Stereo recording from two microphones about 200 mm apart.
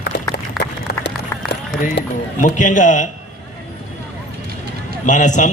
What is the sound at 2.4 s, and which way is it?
Speech, 40° left (ahead or behind).